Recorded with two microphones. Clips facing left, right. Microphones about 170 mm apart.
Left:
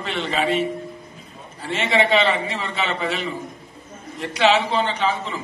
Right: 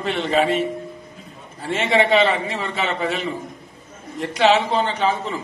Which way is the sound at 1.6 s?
45° right (ahead or behind).